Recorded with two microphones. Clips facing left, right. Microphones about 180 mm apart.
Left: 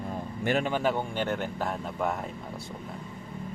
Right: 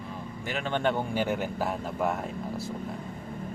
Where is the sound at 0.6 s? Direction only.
5° left (ahead or behind).